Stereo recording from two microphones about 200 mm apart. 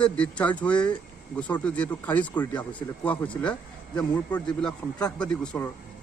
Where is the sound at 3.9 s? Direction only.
20° left (ahead or behind).